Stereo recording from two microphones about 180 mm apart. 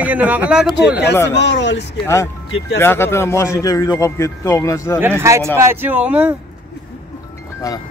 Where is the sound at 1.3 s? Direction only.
75° left (ahead or behind).